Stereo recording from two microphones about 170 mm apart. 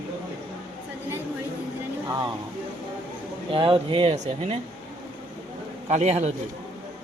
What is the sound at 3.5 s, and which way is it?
Speech, 30° right (ahead or behind).